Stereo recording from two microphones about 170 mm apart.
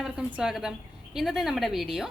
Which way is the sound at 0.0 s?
5° right (ahead or behind).